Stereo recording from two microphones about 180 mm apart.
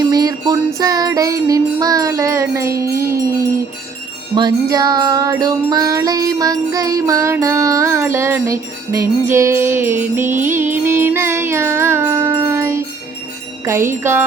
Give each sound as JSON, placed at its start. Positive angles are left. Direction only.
{"t": 0.1, "sound": "music", "side_deg": -20}
{"t": 4.4, "sound": "music", "side_deg": -20}